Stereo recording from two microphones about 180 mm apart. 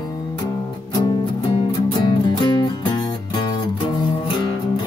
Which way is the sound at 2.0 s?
25° left (ahead or behind).